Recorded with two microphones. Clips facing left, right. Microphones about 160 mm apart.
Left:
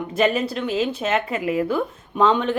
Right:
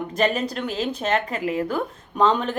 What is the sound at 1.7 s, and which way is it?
Speech, centre (ahead or behind).